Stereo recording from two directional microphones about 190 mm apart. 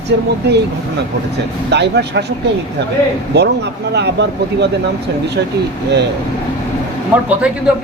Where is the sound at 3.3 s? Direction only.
65° right (ahead or behind).